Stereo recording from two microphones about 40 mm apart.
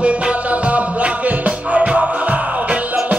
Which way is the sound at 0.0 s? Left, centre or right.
Right.